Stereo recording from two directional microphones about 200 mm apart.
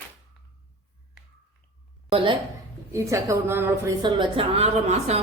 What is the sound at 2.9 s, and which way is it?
Speech, 15° right (ahead or behind).